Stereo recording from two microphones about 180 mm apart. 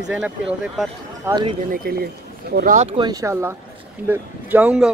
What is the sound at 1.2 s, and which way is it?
Speech, 25° right (ahead or behind).